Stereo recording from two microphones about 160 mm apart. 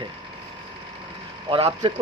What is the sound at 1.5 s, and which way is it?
Speech, 35° right (ahead or behind).